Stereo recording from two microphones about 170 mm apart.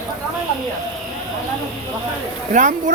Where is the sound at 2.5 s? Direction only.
45° right (ahead or behind).